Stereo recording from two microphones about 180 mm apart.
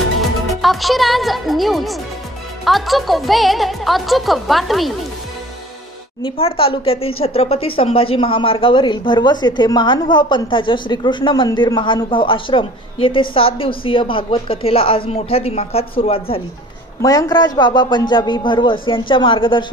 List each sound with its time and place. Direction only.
0.6 s speech: centre (ahead or behind)
6.2 s speech: 30° left (ahead or behind)
17.0 s speech: 20° left (ahead or behind)